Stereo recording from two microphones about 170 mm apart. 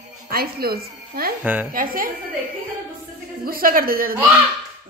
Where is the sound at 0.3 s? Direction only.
60° right (ahead or behind).